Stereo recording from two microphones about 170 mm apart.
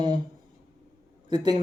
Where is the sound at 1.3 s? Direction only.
25° right (ahead or behind).